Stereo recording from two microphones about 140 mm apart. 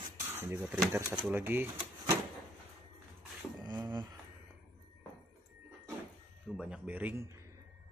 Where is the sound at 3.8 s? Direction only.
30° right (ahead or behind).